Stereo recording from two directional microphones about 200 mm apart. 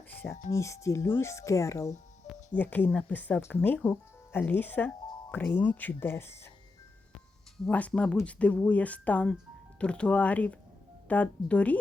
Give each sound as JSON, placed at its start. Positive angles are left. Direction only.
{"t": 0.1, "sound": "a sound", "side_deg": 10}
{"t": 0.5, "sound": "speech", "side_deg": 15}
{"t": 7.6, "sound": "speech", "side_deg": 5}